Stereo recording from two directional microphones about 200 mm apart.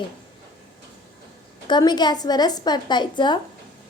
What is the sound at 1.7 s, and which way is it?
A woman's voice, 20° left (ahead or behind).